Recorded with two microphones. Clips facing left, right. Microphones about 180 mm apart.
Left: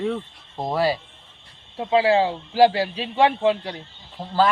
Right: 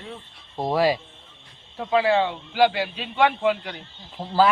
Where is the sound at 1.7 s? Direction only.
25° left (ahead or behind).